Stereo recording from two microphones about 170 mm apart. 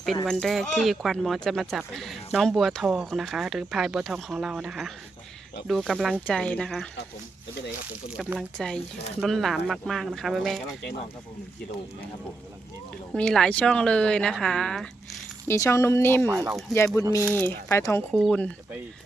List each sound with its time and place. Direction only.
0.3 s speech: centre (ahead or behind)
8.0 s speech: 5° right (ahead or behind)
13.1 s speech: 5° left (ahead or behind)
15.4 s speech: 15° left (ahead or behind)
16.3 s speech: 15° right (ahead or behind)
16.7 s speech: 15° left (ahead or behind)